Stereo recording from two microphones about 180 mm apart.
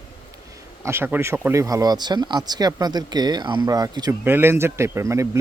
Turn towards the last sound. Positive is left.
turn(degrees=-15)  # may be behind; listen again after turning